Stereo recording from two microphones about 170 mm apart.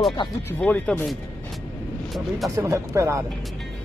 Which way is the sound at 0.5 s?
10° left (ahead or behind).